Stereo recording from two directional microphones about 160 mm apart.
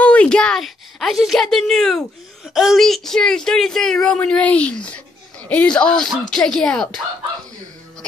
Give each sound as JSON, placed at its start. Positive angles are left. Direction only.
{"t": 0.0, "sound": "a woman's voice", "side_deg": 10}